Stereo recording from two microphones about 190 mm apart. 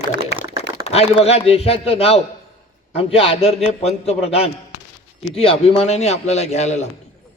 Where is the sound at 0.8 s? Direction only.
30° left (ahead or behind).